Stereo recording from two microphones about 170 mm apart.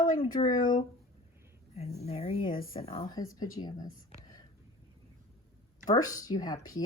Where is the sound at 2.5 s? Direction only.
60° left (ahead or behind).